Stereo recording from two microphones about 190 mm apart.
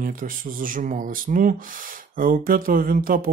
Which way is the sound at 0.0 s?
45° right (ahead or behind).